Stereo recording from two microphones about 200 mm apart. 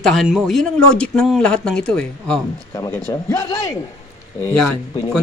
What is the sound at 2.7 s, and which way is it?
Speech, 20° left (ahead or behind).